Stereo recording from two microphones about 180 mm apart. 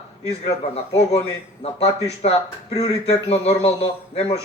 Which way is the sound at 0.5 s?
35° left (ahead or behind).